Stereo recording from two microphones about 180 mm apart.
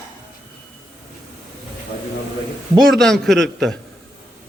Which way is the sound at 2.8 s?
Centre (ahead or behind).